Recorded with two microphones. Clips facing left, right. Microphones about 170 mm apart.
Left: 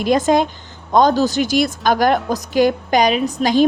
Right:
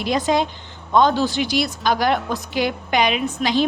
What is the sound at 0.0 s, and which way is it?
A woman's voice, 45° left (ahead or behind).